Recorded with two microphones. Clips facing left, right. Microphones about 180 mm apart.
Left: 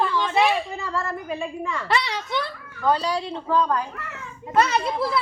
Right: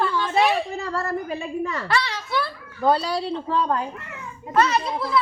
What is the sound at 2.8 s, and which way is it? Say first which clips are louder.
A woman's voice: right 2 dB; 35° right (ahead or behind).